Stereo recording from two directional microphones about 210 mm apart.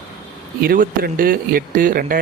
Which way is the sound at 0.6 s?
45° right (ahead or behind).